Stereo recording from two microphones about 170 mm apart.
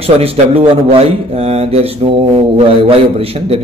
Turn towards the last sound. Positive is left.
turn(degrees=-35)  # may be behind; listen again after turning